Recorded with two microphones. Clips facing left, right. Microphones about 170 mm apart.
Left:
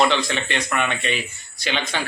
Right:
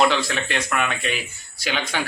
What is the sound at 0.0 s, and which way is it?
A man's voice, 5° right (ahead or behind).